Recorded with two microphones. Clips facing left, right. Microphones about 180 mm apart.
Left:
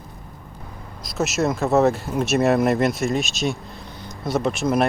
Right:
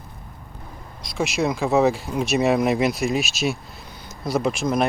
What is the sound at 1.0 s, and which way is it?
Speech, centre (ahead or behind).